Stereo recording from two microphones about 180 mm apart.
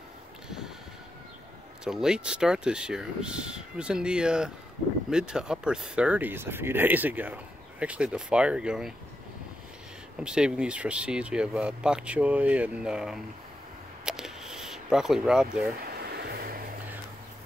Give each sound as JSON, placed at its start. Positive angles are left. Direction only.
{"t": 1.9, "sound": "speech", "side_deg": -5}
{"t": 10.1, "sound": "speech", "side_deg": -5}
{"t": 14.0, "sound": "a sound", "side_deg": -5}
{"t": 15.8, "sound": "music", "side_deg": -60}